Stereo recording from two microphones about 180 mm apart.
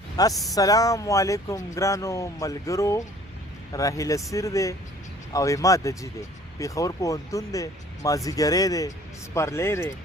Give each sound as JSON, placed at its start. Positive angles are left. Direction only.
{"t": 0.2, "sound": "speech", "side_deg": 20}